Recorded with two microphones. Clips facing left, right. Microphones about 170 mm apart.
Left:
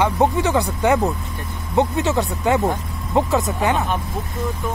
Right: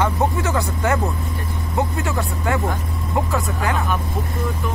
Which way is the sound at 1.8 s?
20° left (ahead or behind).